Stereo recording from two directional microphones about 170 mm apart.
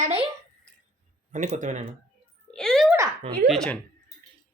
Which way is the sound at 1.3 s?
45° right (ahead or behind).